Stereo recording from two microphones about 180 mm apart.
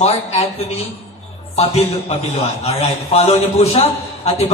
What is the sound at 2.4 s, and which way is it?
A man's voice, 35° left (ahead or behind).